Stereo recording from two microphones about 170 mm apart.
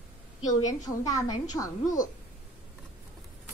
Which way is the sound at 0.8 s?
20° left (ahead or behind).